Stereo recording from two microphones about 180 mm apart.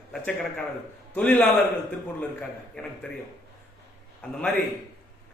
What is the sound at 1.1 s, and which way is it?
Speech, 10° left (ahead or behind).